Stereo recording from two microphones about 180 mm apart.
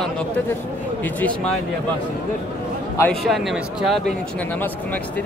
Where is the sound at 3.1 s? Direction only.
Centre (ahead or behind).